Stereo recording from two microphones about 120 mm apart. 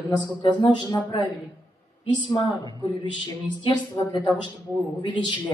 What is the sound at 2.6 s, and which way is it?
Speech, 40° left (ahead or behind).